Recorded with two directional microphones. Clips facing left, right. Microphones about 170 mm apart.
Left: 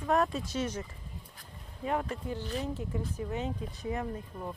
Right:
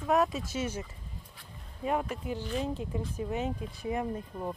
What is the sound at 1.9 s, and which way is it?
Speech, 15° right (ahead or behind).